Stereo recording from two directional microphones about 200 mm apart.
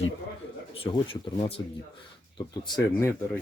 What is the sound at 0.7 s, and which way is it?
Speech, 25° left (ahead or behind).